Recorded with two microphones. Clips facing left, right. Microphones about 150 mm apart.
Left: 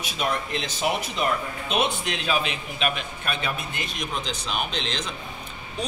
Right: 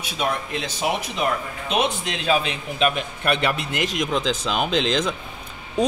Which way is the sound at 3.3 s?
70° right (ahead or behind).